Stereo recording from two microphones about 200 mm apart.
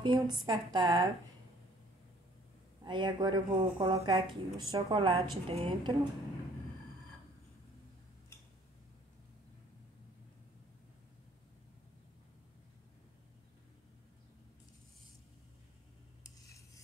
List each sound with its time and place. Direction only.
0.0 s speech: 20° right (ahead or behind)
2.8 s speech: 25° right (ahead or behind)
16.4 s cutlery: 15° left (ahead or behind)